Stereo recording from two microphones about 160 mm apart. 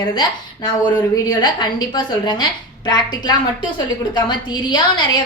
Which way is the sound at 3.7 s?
30° left (ahead or behind).